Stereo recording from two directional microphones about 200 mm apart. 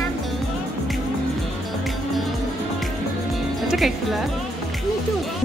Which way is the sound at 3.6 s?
Centre (ahead or behind).